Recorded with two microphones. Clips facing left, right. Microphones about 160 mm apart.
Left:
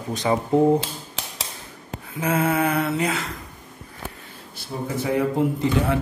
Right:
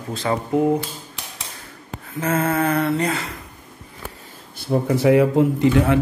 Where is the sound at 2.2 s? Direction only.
10° left (ahead or behind).